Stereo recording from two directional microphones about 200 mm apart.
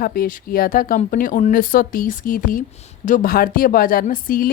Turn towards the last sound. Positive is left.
turn(degrees=45)  # may be behind; listen again after turning